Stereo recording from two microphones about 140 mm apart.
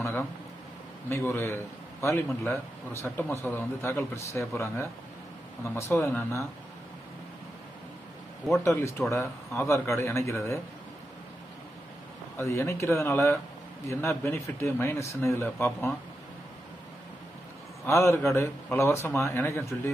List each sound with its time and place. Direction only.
0.0 s a sound: 15° left (ahead or behind)
1.0 s a man's voice: 15° left (ahead or behind)
8.6 s speech: 20° left (ahead or behind)
12.4 s a man's voice: 20° left (ahead or behind)
17.8 s speech: 20° left (ahead or behind)